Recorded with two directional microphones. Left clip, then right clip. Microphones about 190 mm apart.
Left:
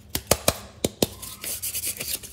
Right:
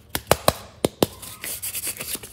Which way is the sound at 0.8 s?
20° right (ahead or behind).